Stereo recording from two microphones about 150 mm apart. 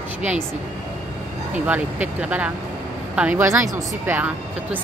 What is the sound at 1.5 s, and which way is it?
Speech, 10° right (ahead or behind).